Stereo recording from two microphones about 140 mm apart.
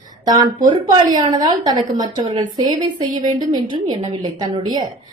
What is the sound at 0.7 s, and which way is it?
A woman's voice, 30° right (ahead or behind).